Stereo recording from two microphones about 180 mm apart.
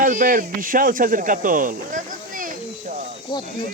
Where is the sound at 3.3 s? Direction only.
25° left (ahead or behind).